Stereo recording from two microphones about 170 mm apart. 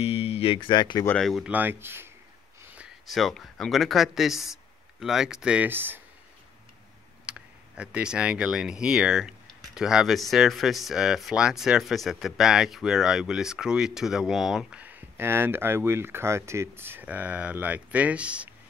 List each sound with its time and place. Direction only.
0.0 s speech: 35° left (ahead or behind)
1.0 s speech: 5° left (ahead or behind); by 2.1 s 15° right (ahead or behind)
3.1 s speech: centre (ahead or behind)
7.2 s speech: 5° right (ahead or behind)